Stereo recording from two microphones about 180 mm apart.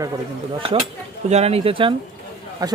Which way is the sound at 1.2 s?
35° right (ahead or behind).